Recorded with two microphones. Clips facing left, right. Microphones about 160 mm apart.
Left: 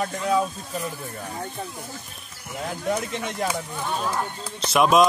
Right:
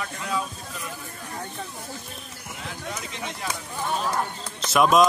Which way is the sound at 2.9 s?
55° left (ahead or behind).